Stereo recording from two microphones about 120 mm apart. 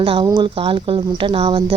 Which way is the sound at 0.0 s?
50° right (ahead or behind).